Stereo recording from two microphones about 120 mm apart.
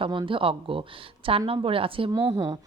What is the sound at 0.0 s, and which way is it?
Speech, 45° right (ahead or behind).